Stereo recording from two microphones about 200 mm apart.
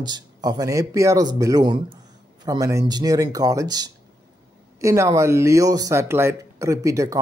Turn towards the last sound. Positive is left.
turn(degrees=-15)  # may be behind; listen again after turning